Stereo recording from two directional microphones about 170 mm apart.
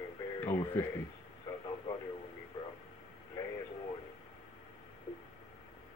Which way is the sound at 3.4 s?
20° left (ahead or behind).